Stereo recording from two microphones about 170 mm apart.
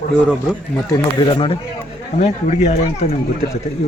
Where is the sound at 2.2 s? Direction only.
40° left (ahead or behind).